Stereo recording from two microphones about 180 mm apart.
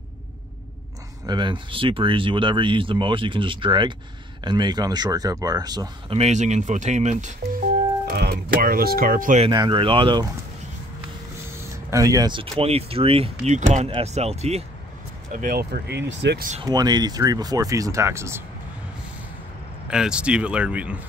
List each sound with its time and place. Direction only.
1.2 s speech: 25° right (ahead or behind)
6.1 s speech: 40° right (ahead or behind)
8.0 s speech: 60° right (ahead or behind)
9.5 s speech: 25° right (ahead or behind)
11.5 s a sound: 15° right (ahead or behind)
12.5 s speech: 35° right (ahead or behind)
15.3 s speech: 50° right (ahead or behind); by 16.4 s 75° right (ahead or behind)
16.6 s speech: 20° right (ahead or behind)
19.9 s speech: 5° right (ahead or behind)